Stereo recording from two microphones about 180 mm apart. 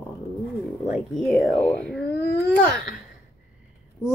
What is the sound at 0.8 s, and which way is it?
A woman's voice, 5° right (ahead or behind).